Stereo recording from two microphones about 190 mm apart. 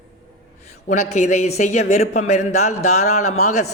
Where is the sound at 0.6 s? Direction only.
35° left (ahead or behind).